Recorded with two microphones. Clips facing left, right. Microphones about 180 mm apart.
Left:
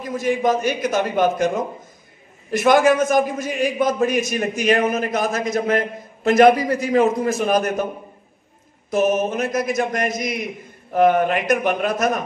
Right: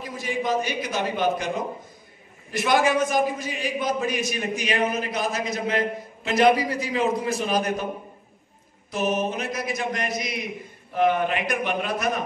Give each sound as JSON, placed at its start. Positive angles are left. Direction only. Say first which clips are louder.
{"t": 0.0, "sound": "a man's voice", "louder": "left 8 dB", "side_deg": 45}
{"t": 8.9, "sound": "a man's voice", "louder": "left 6 dB", "side_deg": 45}